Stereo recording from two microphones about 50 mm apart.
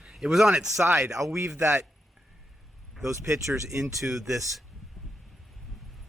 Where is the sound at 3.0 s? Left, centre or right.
Right.